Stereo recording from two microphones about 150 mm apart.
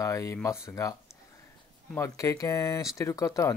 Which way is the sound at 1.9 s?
20° left (ahead or behind).